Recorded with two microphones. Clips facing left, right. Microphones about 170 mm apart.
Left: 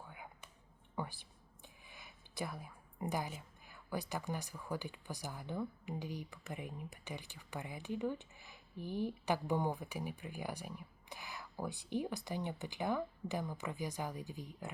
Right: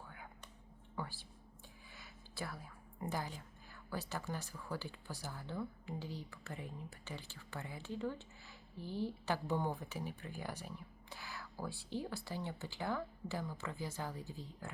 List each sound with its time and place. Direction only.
0.1 s whispering: 15° left (ahead or behind)
0.9 s a sound: 15° left (ahead or behind)
1.9 s a woman's voice: 15° left (ahead or behind)